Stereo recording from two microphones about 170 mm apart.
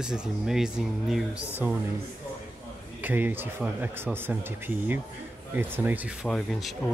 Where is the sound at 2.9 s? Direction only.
10° right (ahead or behind).